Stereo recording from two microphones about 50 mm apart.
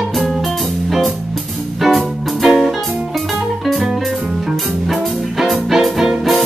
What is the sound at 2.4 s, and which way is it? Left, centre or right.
Music, centre.